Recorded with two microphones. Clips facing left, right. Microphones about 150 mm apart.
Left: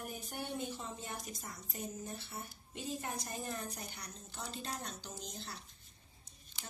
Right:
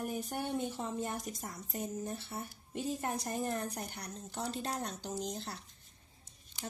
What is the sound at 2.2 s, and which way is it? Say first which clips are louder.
A woman's voice: right 5 dB; 50° right (ahead or behind).